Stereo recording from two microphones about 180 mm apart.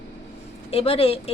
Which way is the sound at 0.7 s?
30° left (ahead or behind).